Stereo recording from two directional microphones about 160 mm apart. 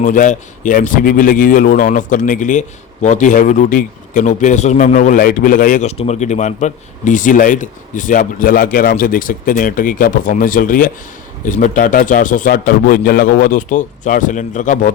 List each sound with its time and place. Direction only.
0.0 s a man's voice: 55° left (ahead or behind)
6.0 s a man's voice: 45° left (ahead or behind)